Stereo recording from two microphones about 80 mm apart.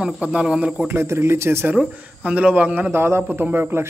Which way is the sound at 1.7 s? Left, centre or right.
Centre.